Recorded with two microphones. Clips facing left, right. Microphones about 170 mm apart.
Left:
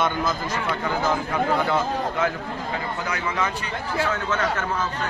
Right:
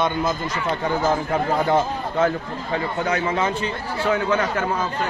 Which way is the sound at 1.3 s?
40° right (ahead or behind).